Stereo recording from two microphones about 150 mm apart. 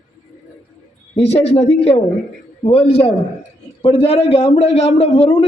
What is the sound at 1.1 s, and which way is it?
A man's voice, 45° left (ahead or behind).